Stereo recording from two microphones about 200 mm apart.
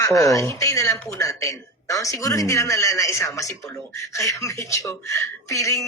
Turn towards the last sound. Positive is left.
turn(degrees=15)  # may be behind; listen again after turning